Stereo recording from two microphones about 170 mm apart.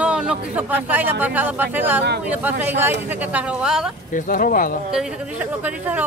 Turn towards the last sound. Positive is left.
turn(degrees=-10)  # may be behind; listen again after turning